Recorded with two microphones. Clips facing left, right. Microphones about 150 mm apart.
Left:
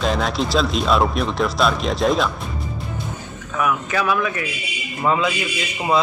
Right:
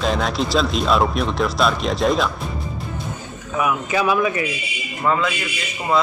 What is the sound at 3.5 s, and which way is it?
Speech, 10° right (ahead or behind).